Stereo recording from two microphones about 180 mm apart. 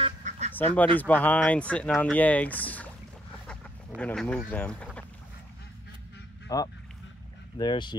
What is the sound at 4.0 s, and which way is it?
Speech, 5° left (ahead or behind).